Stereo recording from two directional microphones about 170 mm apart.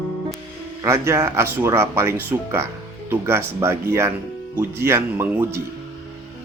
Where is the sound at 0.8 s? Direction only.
15° right (ahead or behind).